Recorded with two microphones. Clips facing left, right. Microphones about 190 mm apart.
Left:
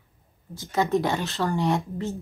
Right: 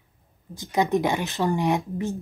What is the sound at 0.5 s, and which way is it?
Speech, 15° right (ahead or behind).